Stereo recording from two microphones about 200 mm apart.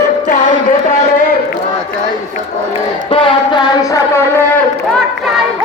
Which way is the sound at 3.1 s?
25° left (ahead or behind).